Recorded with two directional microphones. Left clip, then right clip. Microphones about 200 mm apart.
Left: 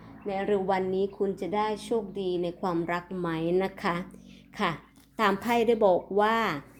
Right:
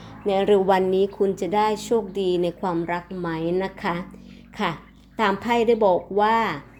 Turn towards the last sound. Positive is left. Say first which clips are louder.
# right 5 dB
turn(degrees=5)  # may be behind; listen again after turning